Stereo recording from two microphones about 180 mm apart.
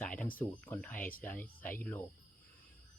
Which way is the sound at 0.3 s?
10° left (ahead or behind).